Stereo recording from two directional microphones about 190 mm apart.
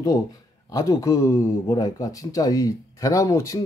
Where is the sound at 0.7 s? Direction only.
20° left (ahead or behind).